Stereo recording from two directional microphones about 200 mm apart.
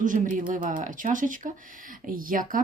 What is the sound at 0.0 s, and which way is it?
Speech, 40° right (ahead or behind).